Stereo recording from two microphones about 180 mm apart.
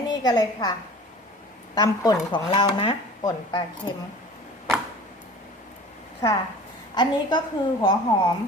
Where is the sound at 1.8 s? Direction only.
20° left (ahead or behind).